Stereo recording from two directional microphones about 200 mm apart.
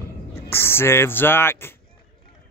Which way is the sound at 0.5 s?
10° left (ahead or behind).